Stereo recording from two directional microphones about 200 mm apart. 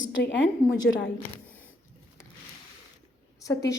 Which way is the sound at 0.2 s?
60° left (ahead or behind).